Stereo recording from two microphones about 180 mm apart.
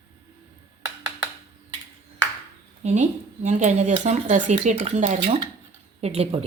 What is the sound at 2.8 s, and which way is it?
Speech, 40° right (ahead or behind).